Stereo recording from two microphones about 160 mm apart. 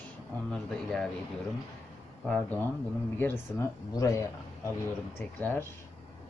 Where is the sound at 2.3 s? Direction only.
10° left (ahead or behind).